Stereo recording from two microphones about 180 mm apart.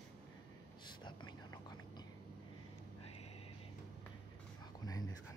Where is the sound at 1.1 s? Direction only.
25° left (ahead or behind).